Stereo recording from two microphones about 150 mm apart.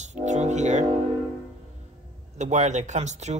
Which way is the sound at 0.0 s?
50° right (ahead or behind).